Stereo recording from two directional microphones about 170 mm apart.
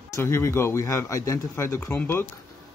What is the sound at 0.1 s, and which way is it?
Speech, 15° left (ahead or behind).